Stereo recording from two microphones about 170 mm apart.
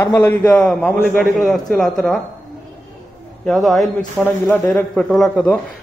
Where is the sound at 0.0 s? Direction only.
15° left (ahead or behind).